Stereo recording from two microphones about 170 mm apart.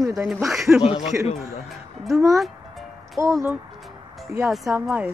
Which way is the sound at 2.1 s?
20° right (ahead or behind).